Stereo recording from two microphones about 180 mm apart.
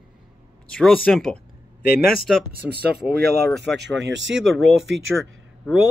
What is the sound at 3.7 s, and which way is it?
Speech, 70° right (ahead or behind).